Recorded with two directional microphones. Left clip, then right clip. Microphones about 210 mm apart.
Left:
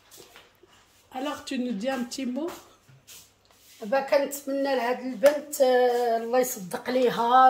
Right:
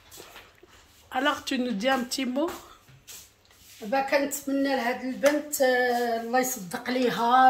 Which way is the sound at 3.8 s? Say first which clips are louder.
Left 1 dB; 25° left (ahead or behind).